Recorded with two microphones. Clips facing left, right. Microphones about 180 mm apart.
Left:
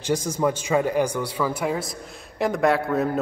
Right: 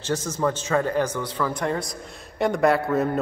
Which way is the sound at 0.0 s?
10° left (ahead or behind).